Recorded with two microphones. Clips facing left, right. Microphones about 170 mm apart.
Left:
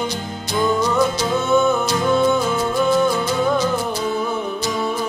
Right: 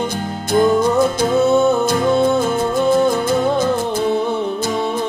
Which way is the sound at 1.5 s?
35° right (ahead or behind).